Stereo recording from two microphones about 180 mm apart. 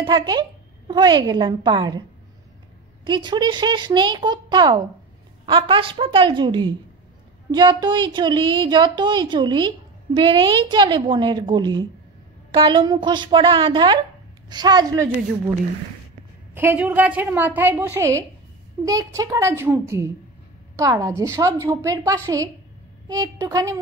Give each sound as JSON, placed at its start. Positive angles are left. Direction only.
{"t": 0.0, "sound": "a woman's voice", "side_deg": -25}
{"t": 3.1, "sound": "a woman's voice", "side_deg": -25}
{"t": 16.5, "sound": "a woman's voice", "side_deg": -10}